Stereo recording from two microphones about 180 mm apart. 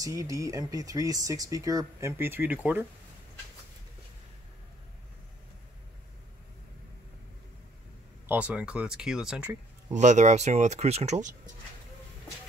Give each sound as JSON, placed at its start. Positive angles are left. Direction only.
{"t": 0.0, "sound": "speech", "side_deg": -20}
{"t": 8.3, "sound": "speech", "side_deg": -5}
{"t": 9.9, "sound": "speech", "side_deg": -40}